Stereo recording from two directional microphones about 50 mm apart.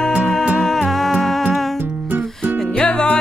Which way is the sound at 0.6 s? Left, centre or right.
Centre.